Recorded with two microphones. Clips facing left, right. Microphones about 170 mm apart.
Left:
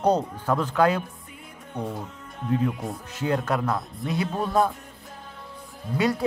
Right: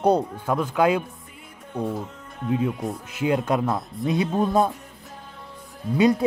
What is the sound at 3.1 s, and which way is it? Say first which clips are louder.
Speech: right 3 dB; 10° right (ahead or behind).